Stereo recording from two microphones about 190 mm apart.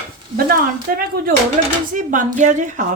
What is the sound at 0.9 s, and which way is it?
Speech, 50° right (ahead or behind).